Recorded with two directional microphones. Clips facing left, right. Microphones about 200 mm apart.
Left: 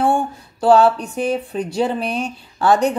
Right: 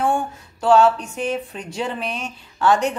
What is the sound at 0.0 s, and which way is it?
Speech, 35° left (ahead or behind).